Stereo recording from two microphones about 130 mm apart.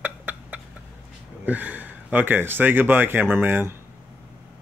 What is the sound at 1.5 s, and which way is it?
Speech, 10° right (ahead or behind).